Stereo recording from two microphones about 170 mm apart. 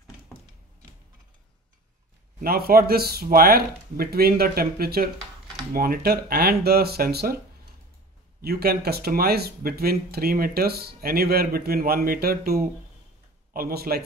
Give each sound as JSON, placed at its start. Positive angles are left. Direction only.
{"t": 2.4, "sound": "speech", "side_deg": -60}
{"t": 8.4, "sound": "speech", "side_deg": -65}